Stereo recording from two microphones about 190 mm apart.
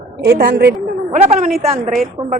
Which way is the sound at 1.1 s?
35° right (ahead or behind).